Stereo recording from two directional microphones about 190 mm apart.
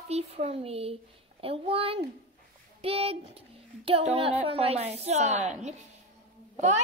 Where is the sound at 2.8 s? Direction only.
30° right (ahead or behind).